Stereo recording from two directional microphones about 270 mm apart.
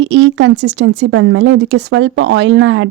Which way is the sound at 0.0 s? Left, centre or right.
Right.